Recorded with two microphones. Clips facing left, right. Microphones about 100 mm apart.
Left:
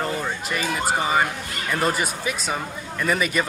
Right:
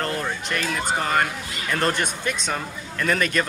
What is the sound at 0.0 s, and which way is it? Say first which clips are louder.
Speech: even; 5° left (ahead or behind).